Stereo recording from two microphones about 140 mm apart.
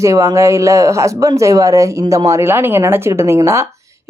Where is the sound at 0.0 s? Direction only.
20° right (ahead or behind).